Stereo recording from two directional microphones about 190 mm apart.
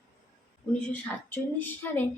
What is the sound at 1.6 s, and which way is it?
Speech, 10° left (ahead or behind).